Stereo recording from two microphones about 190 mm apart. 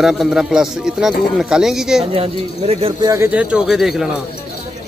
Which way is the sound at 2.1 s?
30° right (ahead or behind).